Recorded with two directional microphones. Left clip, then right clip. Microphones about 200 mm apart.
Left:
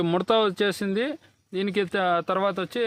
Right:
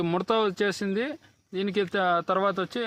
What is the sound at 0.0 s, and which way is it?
A man's voice, 25° left (ahead or behind).